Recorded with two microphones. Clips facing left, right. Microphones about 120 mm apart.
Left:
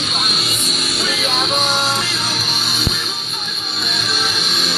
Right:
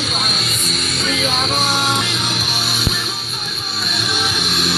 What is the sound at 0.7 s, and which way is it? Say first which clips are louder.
Music: right 2 dB; 10° left (ahead or behind).